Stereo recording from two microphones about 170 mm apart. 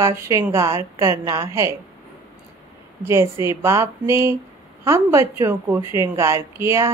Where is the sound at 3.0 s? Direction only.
15° right (ahead or behind).